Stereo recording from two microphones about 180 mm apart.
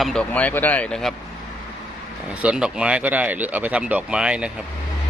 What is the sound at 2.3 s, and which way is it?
Speech, 5° right (ahead or behind).